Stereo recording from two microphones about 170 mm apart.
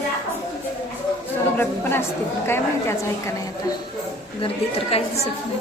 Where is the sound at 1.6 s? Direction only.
15° left (ahead or behind).